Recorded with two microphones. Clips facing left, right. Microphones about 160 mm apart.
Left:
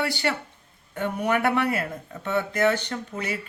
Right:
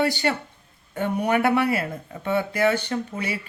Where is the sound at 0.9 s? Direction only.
15° right (ahead or behind).